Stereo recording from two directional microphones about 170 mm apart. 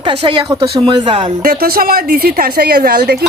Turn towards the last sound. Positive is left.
turn(degrees=-65)  # may be behind; listen again after turning